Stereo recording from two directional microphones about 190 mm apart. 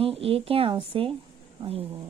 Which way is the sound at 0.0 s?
30° right (ahead or behind).